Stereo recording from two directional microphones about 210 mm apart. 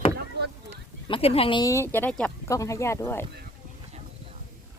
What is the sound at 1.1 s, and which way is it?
Speech, 25° left (ahead or behind).